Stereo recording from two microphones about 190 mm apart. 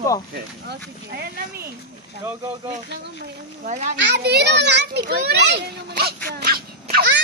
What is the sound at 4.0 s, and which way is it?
A child's voice, 65° right (ahead or behind).